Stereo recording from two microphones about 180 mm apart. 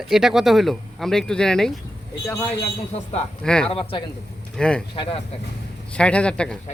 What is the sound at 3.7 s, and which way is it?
Speech, 30° left (ahead or behind).